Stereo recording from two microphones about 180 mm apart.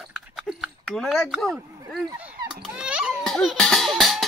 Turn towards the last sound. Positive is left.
turn(degrees=0)  # may be behind; listen again after turning